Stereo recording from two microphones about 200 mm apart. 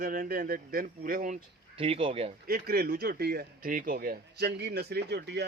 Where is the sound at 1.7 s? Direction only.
30° right (ahead or behind).